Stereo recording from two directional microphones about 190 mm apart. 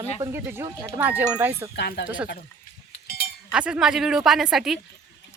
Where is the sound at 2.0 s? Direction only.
10° right (ahead or behind).